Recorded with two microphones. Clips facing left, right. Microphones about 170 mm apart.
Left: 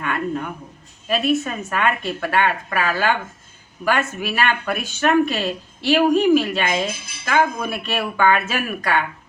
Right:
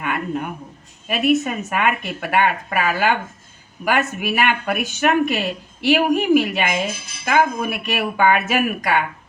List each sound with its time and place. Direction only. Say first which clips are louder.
0.0 s speech: even; 15° right (ahead or behind)